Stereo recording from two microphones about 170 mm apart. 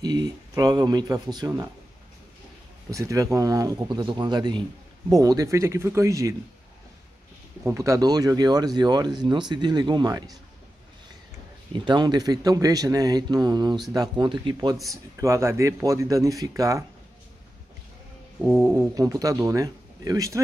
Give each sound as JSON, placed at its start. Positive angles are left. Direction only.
{"t": 0.0, "sound": "speech", "side_deg": -25}
{"t": 2.9, "sound": "speech", "side_deg": -20}
{"t": 7.6, "sound": "speech", "side_deg": -15}
{"t": 11.7, "sound": "speech", "side_deg": -25}
{"t": 18.7, "sound": "speech", "side_deg": -15}